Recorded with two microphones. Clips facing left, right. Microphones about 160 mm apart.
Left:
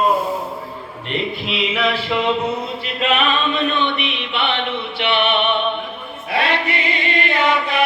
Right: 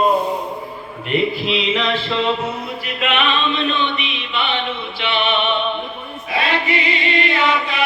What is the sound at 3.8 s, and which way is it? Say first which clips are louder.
Chant: left 2 dB; 60° left (ahead or behind).